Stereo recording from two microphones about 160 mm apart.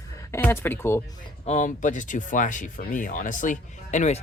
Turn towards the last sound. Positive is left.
turn(degrees=50)  # may be behind; listen again after turning